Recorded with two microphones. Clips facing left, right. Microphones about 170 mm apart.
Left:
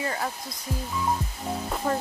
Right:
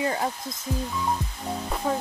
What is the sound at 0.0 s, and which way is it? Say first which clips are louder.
Speech: right 4 dB; 25° right (ahead or behind).